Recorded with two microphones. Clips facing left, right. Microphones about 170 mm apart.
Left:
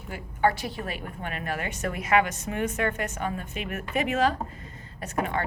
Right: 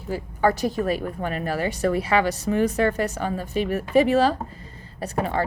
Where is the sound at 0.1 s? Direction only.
40° right (ahead or behind).